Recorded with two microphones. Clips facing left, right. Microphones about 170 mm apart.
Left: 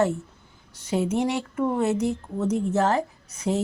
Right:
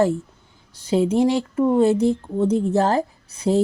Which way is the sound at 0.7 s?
30° right (ahead or behind).